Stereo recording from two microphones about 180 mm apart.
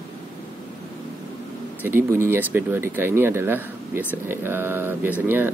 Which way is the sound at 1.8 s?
15° right (ahead or behind).